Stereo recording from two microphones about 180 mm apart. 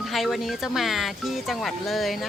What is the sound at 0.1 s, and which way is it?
Speech, centre (ahead or behind).